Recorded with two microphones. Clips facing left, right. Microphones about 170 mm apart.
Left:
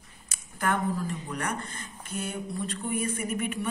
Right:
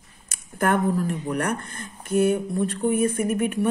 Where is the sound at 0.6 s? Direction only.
55° right (ahead or behind).